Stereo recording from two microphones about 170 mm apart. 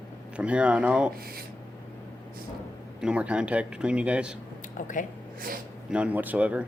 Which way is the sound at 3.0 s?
5° right (ahead or behind).